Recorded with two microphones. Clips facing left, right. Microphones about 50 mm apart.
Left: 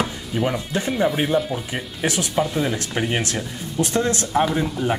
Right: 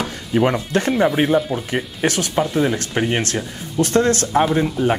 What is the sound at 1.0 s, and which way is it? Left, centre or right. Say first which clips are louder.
Speech: right 3 dB; centre.